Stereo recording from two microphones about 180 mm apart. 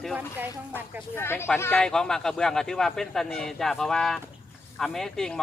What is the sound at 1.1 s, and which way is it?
Speech, 15° left (ahead or behind).